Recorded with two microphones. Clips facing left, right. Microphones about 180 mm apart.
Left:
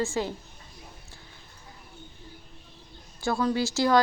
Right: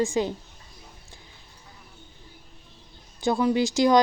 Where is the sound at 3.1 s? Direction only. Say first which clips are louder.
Right 4 dB; 15° right (ahead or behind).